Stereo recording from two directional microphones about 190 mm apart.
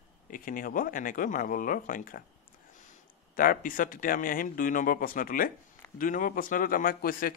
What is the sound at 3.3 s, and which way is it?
Speech, 45° left (ahead or behind).